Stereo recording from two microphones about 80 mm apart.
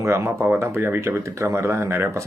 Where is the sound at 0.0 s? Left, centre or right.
Right.